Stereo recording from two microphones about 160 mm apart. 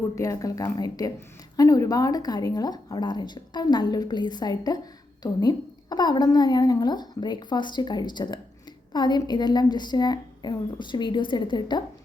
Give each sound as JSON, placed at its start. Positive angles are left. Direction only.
{"t": 0.2, "sound": "a woman's voice", "side_deg": 20}